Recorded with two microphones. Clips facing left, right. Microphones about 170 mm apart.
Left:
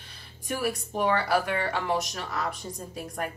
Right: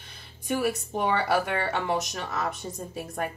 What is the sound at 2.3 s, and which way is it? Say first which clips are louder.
Speech: right 1 dB; 25° right (ahead or behind).